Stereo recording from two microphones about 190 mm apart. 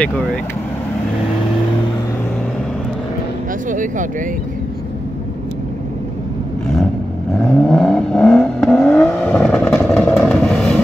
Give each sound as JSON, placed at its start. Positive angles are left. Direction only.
{"t": 3.7, "sound": "speech", "side_deg": -45}
{"t": 7.3, "sound": "vehicle", "side_deg": 5}